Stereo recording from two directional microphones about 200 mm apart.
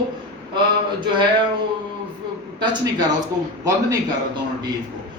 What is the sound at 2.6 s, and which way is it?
Speech, 20° right (ahead or behind).